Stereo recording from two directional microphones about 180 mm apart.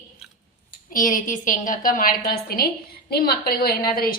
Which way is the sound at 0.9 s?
45° left (ahead or behind).